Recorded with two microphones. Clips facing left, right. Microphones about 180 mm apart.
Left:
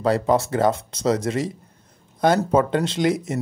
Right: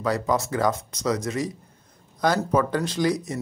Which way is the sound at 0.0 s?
30° left (ahead or behind).